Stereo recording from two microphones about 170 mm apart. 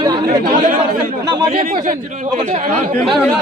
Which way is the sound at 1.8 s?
50° right (ahead or behind).